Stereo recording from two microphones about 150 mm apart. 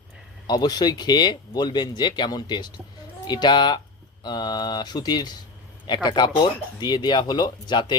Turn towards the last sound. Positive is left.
turn(degrees=30)  # may be behind; listen again after turning